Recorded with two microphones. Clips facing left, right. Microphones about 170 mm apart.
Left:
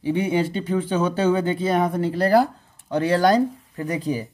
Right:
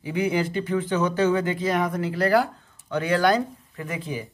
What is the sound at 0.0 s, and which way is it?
Speech, 30° left (ahead or behind).